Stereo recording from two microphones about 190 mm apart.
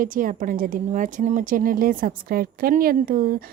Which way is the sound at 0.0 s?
45° right (ahead or behind).